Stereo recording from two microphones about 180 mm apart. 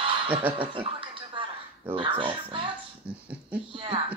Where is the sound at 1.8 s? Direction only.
30° right (ahead or behind).